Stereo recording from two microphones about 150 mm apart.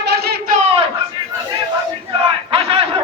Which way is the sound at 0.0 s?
90° right.